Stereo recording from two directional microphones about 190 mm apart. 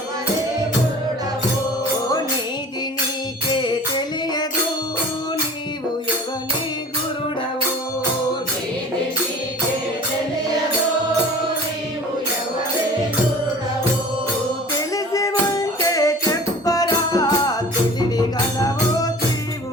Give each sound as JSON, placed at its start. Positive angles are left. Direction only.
{"t": 3.5, "sound": "music", "side_deg": 25}
{"t": 14.9, "sound": "music", "side_deg": 15}